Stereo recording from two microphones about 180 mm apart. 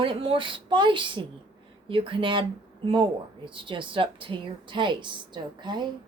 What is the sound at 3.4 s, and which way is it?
A woman's voice, 30° right (ahead or behind).